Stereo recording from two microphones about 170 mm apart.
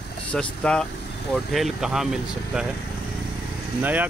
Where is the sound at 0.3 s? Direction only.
5° left (ahead or behind).